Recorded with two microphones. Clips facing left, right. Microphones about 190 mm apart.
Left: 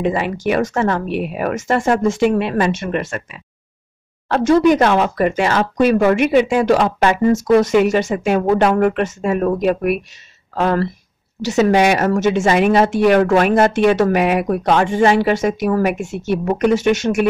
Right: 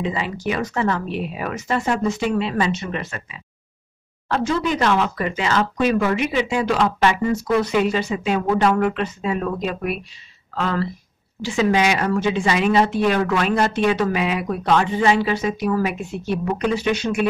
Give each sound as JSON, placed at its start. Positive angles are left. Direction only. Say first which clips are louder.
{"t": 0.0, "sound": "speech", "louder": "left 6 dB", "side_deg": 55}
{"t": 2.0, "sound": "speech", "louder": "left 6 dB", "side_deg": 60}
{"t": 4.3, "sound": "speech", "louder": "left 9 dB", "side_deg": 50}
{"t": 12.8, "sound": "speech", "louder": "left 6 dB", "side_deg": 65}
{"t": 13.3, "sound": "speech", "louder": "left 6 dB", "side_deg": 50}
{"t": 16.1, "sound": "speech", "louder": "left 4 dB", "side_deg": 80}
{"t": 16.4, "sound": "speech", "louder": "left 7 dB", "side_deg": 50}